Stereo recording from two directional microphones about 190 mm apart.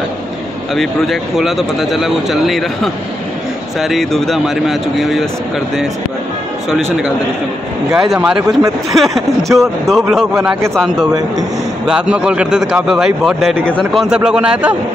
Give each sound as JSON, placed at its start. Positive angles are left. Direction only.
{"t": 0.7, "sound": "speech", "side_deg": 0}
{"t": 8.0, "sound": "speech", "side_deg": 0}
{"t": 10.3, "sound": "a man's voice", "side_deg": -10}
{"t": 11.1, "sound": "a man's voice", "side_deg": -20}
{"t": 11.9, "sound": "speech", "side_deg": -5}